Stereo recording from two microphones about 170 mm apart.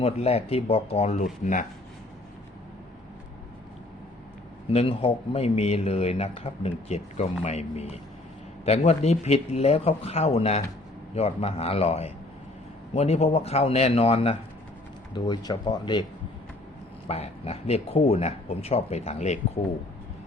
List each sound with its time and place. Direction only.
0.0 s speech: 35° left (ahead or behind)
4.7 s speech: 35° left (ahead or behind)
15.1 s speech: 25° left (ahead or behind)
17.1 s speech: 40° left (ahead or behind)